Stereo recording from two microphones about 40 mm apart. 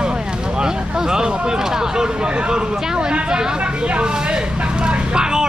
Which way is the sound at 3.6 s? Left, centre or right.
Right.